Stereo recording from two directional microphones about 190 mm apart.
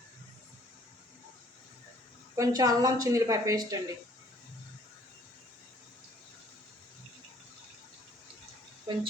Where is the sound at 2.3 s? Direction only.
20° right (ahead or behind).